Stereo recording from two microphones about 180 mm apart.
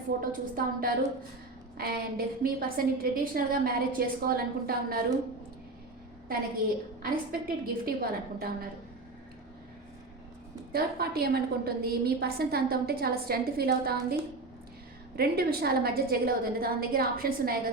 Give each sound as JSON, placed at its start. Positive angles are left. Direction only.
{"t": 0.2, "sound": "a woman's voice", "side_deg": -50}
{"t": 7.0, "sound": "a woman's voice", "side_deg": -55}
{"t": 10.7, "sound": "a woman's voice", "side_deg": -60}